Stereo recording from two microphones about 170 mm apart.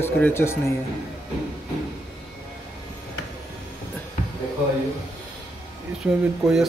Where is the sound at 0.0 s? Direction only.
15° left (ahead or behind).